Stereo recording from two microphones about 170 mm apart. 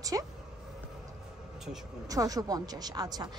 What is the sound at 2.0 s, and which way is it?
A woman's voice, 20° right (ahead or behind).